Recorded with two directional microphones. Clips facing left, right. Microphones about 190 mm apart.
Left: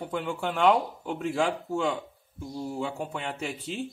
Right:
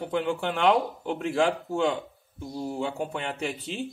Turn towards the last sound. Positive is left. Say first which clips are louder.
# right 2 dB
turn(degrees=0)  # may be behind; listen again after turning